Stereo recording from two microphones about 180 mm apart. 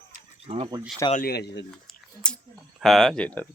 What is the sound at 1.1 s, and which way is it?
Speech, 55° left (ahead or behind).